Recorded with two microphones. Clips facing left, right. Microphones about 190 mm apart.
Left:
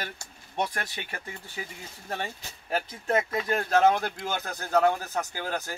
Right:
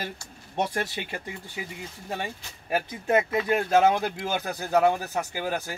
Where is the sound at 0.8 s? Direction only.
20° right (ahead or behind).